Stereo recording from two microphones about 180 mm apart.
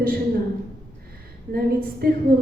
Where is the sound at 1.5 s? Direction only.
55° right (ahead or behind).